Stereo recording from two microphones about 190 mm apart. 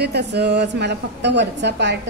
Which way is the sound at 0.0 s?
60° right (ahead or behind).